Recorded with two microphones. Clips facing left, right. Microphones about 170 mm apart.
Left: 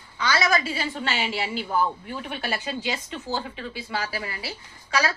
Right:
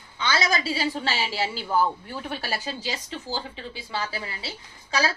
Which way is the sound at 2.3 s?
35° right (ahead or behind).